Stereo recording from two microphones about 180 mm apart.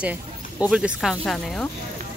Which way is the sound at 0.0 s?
5° right (ahead or behind).